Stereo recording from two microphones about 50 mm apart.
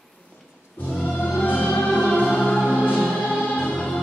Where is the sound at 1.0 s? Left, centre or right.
Left.